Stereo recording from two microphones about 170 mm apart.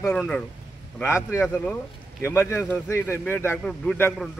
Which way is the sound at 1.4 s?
5° left (ahead or behind).